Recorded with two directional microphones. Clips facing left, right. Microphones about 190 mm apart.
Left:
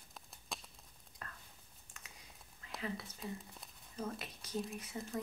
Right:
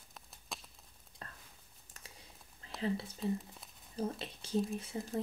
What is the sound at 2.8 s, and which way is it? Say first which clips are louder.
Speech: right 8 dB; 30° right (ahead or behind).